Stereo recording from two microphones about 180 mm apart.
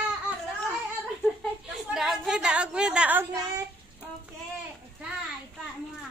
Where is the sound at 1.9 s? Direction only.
Centre (ahead or behind).